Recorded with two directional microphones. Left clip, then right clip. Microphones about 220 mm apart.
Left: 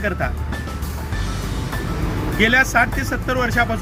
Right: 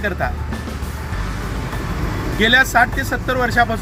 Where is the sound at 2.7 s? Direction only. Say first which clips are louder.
Right 2 dB; 10° left (ahead or behind).